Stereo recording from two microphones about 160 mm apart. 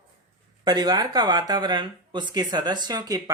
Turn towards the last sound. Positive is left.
turn(degrees=-25)  # may be behind; listen again after turning